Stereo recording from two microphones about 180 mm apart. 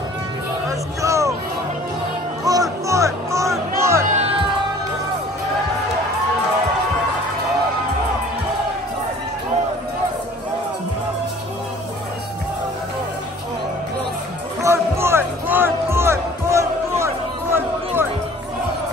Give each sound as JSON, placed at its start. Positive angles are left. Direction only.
{"t": 1.0, "sound": "music", "side_deg": -15}
{"t": 2.4, "sound": "music", "side_deg": -20}
{"t": 4.1, "sound": "music", "side_deg": -35}
{"t": 14.6, "sound": "music", "side_deg": -15}